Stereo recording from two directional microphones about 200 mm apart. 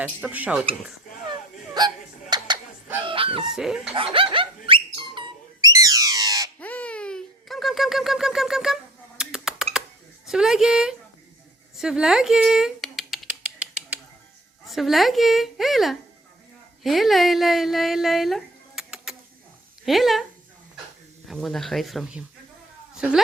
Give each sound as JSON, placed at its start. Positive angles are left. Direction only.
{"t": 0.0, "sound": "speech", "side_deg": -5}
{"t": 1.8, "sound": "speech", "side_deg": -20}
{"t": 2.3, "sound": "a sound", "side_deg": -20}
{"t": 3.0, "sound": "fowl", "side_deg": -25}
{"t": 3.5, "sound": "a woman's voice", "side_deg": -5}
{"t": 3.9, "sound": "speech", "side_deg": -25}
{"t": 4.7, "sound": "a sound", "side_deg": -25}
{"t": 6.6, "sound": "babbling", "side_deg": 5}
{"t": 10.2, "sound": "a woman's voice", "side_deg": 0}
{"t": 11.8, "sound": "a sound", "side_deg": -5}
{"t": 14.7, "sound": "a woman's voice", "side_deg": 0}
{"t": 21.2, "sound": "a woman's voice", "side_deg": 0}